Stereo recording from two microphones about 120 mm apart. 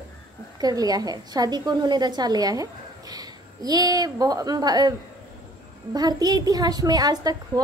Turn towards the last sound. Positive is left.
turn(degrees=-30)  # may be behind; listen again after turning